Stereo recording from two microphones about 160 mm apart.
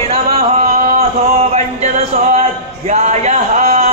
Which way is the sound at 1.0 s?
40° right (ahead or behind).